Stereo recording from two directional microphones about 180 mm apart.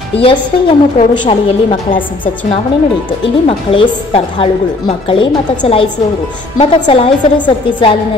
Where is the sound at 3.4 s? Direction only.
30° left (ahead or behind).